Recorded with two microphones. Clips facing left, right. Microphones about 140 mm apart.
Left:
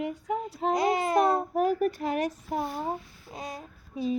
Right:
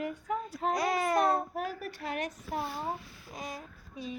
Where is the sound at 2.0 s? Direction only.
30° left (ahead or behind).